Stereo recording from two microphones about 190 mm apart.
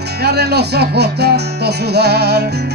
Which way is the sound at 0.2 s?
60° right (ahead or behind).